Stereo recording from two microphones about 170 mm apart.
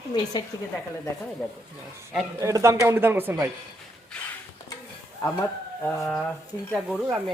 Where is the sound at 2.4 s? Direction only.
20° right (ahead or behind).